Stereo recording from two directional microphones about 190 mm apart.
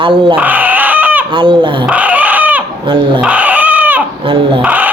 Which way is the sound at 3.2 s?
5° right (ahead or behind).